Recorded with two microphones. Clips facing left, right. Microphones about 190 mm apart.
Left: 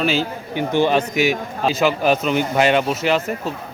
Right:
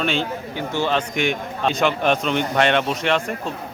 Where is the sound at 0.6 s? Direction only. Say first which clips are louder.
Left 5 dB; 15° left (ahead or behind).